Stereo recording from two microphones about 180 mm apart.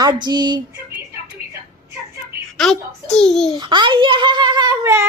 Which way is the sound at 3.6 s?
25° right (ahead or behind).